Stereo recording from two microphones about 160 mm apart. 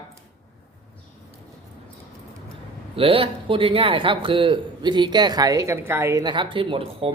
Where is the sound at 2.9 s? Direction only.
35° right (ahead or behind).